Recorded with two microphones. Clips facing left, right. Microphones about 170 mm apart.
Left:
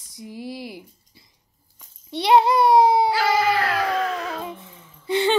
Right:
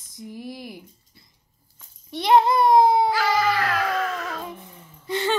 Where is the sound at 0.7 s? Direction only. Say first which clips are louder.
Left 2 dB; 20° left (ahead or behind).